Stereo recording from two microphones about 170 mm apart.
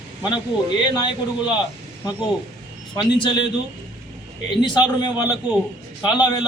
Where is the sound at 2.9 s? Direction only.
30° left (ahead or behind).